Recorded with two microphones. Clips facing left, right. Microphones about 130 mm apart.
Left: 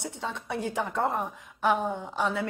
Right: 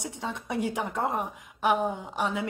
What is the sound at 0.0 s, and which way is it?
A woman's voice, 15° right (ahead or behind).